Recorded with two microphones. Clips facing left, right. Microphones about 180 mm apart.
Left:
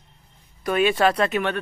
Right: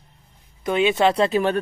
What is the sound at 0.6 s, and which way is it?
Speech, 20° right (ahead or behind).